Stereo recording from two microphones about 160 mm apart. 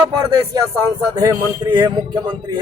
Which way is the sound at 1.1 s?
25° right (ahead or behind).